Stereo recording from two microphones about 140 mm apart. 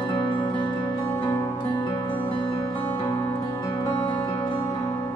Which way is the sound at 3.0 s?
20° left (ahead or behind).